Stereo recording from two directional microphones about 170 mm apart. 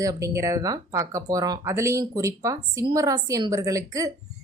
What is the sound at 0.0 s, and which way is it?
Speech, 20° right (ahead or behind).